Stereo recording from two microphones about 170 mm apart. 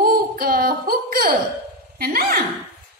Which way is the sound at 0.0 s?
60° right (ahead or behind).